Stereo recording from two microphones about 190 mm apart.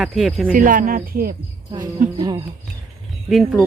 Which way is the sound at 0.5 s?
45° right (ahead or behind).